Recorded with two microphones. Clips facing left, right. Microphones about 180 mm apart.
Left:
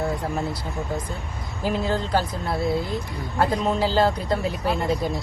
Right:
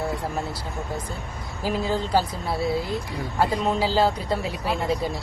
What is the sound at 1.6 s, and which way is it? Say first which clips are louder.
Speech: left 1 dB; 5° right (ahead or behind).